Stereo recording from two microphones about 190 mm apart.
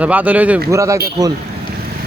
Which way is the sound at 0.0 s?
10° right (ahead or behind).